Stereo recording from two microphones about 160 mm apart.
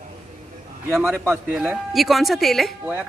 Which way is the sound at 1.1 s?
15° right (ahead or behind).